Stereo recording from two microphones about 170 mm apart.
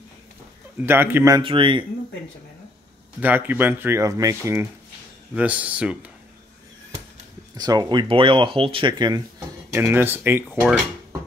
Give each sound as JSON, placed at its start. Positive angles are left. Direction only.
{"t": 0.7, "sound": "speech", "side_deg": -10}
{"t": 1.4, "sound": "speech", "side_deg": -30}
{"t": 3.2, "sound": "speech", "side_deg": -10}
{"t": 5.3, "sound": "speech", "side_deg": -10}
{"t": 7.5, "sound": "speech", "side_deg": -25}
{"t": 9.7, "sound": "speech", "side_deg": -15}